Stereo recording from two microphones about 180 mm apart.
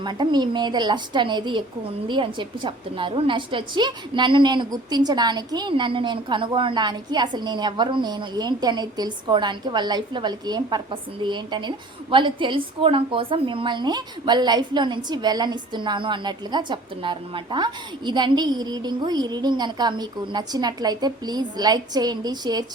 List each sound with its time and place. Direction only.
0.0 s a woman's voice: 25° right (ahead or behind)